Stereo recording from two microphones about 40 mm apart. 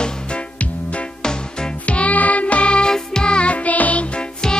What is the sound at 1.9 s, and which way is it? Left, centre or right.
Music, left.